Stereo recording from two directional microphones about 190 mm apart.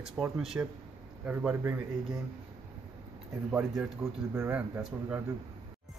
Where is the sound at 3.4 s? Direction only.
10° right (ahead or behind).